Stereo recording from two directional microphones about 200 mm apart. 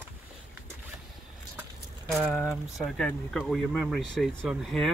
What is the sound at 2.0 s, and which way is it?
Speech, centre (ahead or behind).